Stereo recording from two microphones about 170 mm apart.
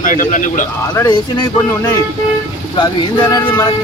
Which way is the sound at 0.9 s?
20° left (ahead or behind).